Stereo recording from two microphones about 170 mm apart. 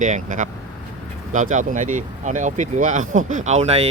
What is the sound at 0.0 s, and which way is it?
Speech, 50° right (ahead or behind).